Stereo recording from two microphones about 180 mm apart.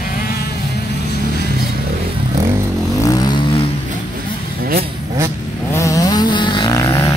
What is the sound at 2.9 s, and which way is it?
Vehicle, 20° left (ahead or behind).